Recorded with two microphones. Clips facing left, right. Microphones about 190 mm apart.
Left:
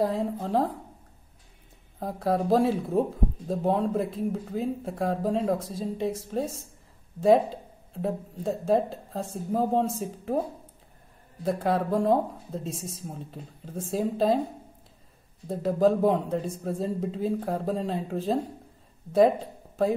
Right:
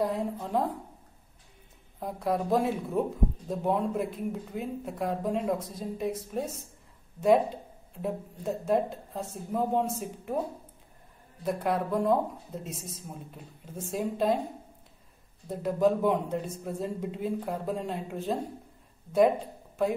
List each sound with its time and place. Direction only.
0.0 s speech: 30° left (ahead or behind)
2.0 s speech: 35° left (ahead or behind)
11.4 s speech: 30° left (ahead or behind)
15.4 s speech: 35° left (ahead or behind)